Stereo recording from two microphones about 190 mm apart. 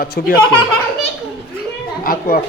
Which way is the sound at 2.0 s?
50° left (ahead or behind).